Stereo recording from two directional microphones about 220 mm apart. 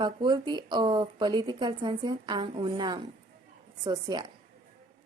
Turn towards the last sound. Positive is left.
turn(degrees=-20)  # may be behind; listen again after turning